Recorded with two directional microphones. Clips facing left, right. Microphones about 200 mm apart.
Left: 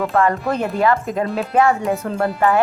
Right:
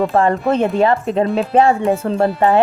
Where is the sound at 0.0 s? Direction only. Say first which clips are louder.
Right 3 dB; 30° right (ahead or behind).